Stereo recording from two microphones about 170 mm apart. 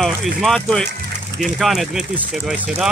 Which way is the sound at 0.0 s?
Centre (ahead or behind).